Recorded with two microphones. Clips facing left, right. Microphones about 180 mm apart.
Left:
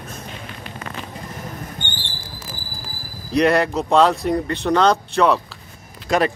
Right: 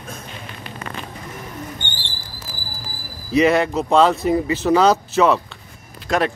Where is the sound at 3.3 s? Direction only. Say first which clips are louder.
Right 1 dB; centre (ahead or behind).